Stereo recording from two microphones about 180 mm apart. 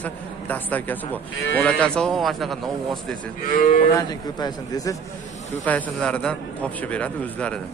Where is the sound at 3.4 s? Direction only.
45° left (ahead or behind).